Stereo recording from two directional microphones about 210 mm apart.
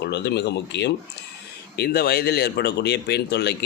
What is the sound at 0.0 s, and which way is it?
Speech, 55° left (ahead or behind).